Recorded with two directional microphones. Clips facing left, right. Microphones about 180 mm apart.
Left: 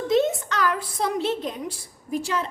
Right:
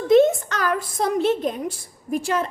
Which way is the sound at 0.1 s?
50° right (ahead or behind).